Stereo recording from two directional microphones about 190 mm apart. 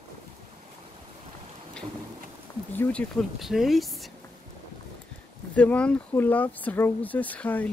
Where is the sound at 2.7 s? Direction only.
5° left (ahead or behind).